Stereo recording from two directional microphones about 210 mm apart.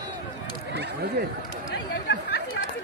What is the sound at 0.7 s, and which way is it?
Speech, 50° right (ahead or behind).